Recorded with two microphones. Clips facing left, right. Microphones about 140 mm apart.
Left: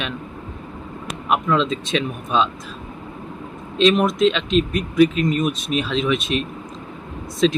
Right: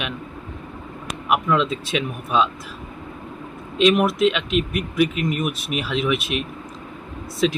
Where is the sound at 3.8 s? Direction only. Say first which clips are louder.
Left 1 dB; 10° right (ahead or behind).